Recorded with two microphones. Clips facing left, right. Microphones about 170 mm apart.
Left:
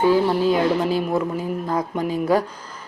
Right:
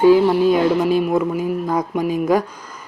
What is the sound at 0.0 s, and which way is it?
Music, 15° right (ahead or behind).